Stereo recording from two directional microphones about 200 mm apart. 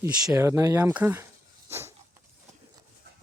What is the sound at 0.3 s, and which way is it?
Speech, 15° right (ahead or behind).